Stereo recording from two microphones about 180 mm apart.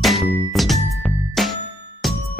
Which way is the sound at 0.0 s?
Centre (ahead or behind).